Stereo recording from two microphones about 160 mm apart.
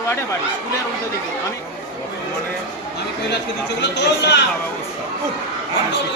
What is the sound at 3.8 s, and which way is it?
Speech, 90° left.